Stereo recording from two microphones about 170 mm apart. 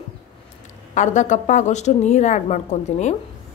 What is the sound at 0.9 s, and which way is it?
A woman's voice, 45° left (ahead or behind).